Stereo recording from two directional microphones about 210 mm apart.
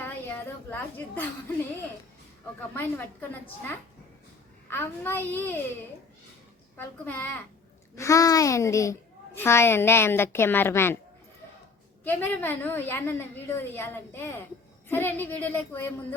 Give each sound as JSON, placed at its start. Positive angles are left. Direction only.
{"t": 0.0, "sound": "a woman's voice", "side_deg": 10}
{"t": 2.7, "sound": "a child's voice", "side_deg": 10}
{"t": 6.7, "sound": "a child's voice", "side_deg": 10}
{"t": 12.0, "sound": "a child's voice", "side_deg": 10}